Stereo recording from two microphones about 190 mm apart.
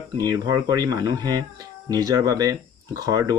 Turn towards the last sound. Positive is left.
turn(degrees=-15)  # may be behind; listen again after turning